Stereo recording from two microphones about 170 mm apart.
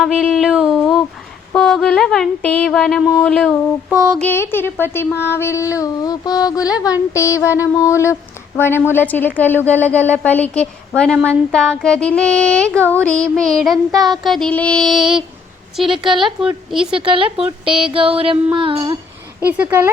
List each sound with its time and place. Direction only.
0.0 s a sound: centre (ahead or behind)
1.5 s child singing: 5° left (ahead or behind)
4.2 s speech: 10° left (ahead or behind)
5.7 s a sound: 20° left (ahead or behind)
7.1 s speech: 15° left (ahead or behind)
11.3 s child singing: 5° left (ahead or behind)
17.0 s a woman's voice: 30° right (ahead or behind)
19.5 s speech: 10° right (ahead or behind)